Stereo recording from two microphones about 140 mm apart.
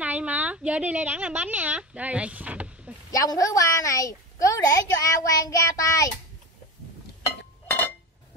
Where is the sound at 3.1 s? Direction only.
25° left (ahead or behind).